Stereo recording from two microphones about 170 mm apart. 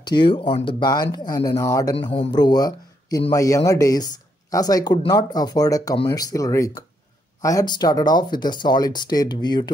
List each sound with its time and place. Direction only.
0.0 s speech: 25° left (ahead or behind)
2.0 s speech: 30° left (ahead or behind)